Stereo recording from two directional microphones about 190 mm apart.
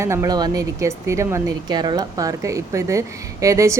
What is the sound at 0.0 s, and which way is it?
A woman's voice, 15° right (ahead or behind).